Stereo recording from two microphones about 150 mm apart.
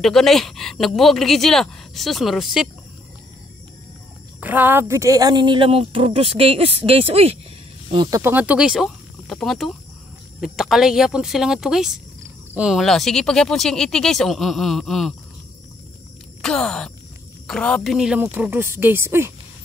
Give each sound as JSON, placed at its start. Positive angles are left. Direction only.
{"t": 0.0, "sound": "speech", "side_deg": 0}
{"t": 4.4, "sound": "speech", "side_deg": -10}
{"t": 8.2, "sound": "speech", "side_deg": -10}
{"t": 16.3, "sound": "groan", "side_deg": 5}
{"t": 17.5, "sound": "speech", "side_deg": 5}